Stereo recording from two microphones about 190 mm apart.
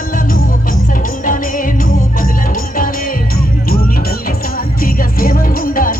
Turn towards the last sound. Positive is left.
turn(degrees=50)  # may be behind; listen again after turning